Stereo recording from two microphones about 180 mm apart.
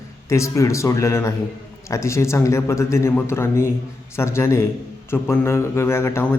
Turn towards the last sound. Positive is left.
turn(degrees=15)  # may be behind; listen again after turning